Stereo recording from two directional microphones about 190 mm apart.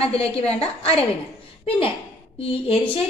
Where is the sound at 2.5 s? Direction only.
30° left (ahead or behind).